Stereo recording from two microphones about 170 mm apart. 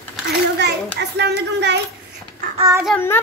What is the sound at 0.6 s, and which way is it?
A child's voice, 80° right.